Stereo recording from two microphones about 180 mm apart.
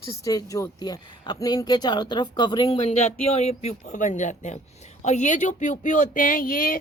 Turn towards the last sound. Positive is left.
turn(degrees=45)  # may be behind; listen again after turning